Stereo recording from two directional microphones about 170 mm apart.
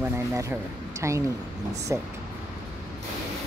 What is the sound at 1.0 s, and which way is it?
Speech, 15° right (ahead or behind).